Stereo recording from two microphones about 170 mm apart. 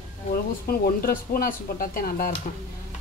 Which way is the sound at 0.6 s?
60° left (ahead or behind).